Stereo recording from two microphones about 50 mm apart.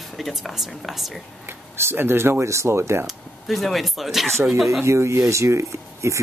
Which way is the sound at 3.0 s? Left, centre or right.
Centre.